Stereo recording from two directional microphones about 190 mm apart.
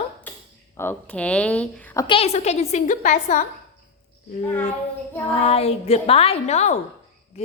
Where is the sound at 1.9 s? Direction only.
25° left (ahead or behind).